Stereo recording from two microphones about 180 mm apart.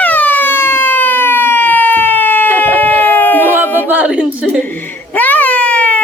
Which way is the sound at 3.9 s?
5° right (ahead or behind).